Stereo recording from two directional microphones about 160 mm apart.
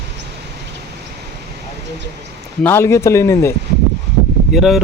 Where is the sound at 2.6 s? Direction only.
15° left (ahead or behind).